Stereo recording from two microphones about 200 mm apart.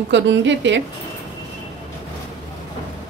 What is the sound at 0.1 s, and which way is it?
Speech, 65° right (ahead or behind).